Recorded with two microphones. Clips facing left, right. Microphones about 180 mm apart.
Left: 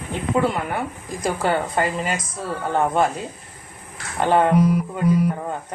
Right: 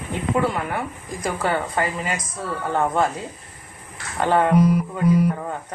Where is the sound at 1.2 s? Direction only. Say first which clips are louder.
Left 2 dB; 30° left (ahead or behind).